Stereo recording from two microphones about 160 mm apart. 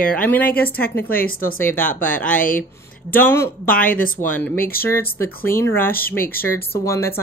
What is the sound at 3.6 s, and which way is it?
Speech, 60° left (ahead or behind).